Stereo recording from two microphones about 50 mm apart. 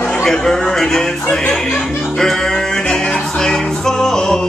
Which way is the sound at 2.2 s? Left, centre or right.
Centre.